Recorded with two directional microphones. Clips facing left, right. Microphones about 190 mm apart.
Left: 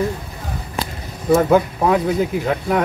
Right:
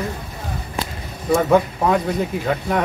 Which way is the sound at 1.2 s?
Centre (ahead or behind).